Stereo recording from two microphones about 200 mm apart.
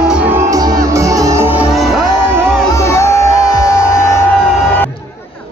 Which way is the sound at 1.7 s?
Centre (ahead or behind).